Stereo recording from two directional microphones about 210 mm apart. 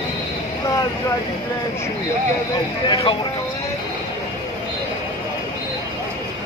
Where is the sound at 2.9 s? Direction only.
25° left (ahead or behind).